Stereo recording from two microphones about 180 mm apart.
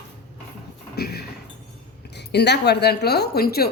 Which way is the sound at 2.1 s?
65° left (ahead or behind).